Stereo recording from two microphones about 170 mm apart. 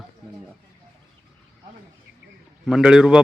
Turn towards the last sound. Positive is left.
turn(degrees=-5)  # may be behind; listen again after turning